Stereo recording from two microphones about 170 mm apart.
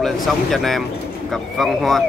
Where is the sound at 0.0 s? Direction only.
Centre (ahead or behind).